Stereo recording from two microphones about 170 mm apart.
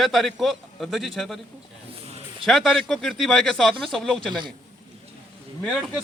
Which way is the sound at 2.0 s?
35° right (ahead or behind).